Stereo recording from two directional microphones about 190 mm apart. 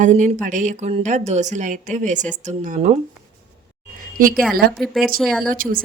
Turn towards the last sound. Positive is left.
turn(degrees=-45)  # may be behind; listen again after turning